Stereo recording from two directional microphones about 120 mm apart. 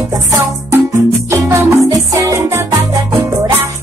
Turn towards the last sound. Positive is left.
turn(degrees=-25)  # may be behind; listen again after turning